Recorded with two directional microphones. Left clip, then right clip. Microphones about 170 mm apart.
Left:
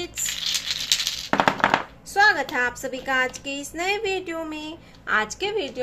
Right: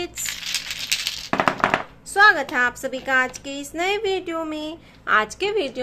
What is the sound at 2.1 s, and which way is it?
A woman's voice, 25° right (ahead or behind).